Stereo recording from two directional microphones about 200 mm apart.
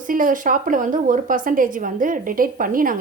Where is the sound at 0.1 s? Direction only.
40° right (ahead or behind).